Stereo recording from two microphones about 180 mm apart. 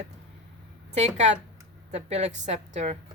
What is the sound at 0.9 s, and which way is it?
A woman's voice, 40° right (ahead or behind).